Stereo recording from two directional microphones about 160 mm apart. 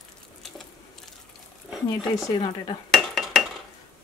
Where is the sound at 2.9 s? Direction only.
Centre (ahead or behind).